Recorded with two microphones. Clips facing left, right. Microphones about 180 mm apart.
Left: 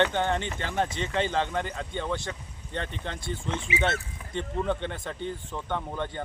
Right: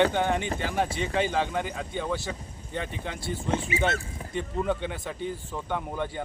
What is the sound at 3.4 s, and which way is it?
Speech, 45° right (ahead or behind).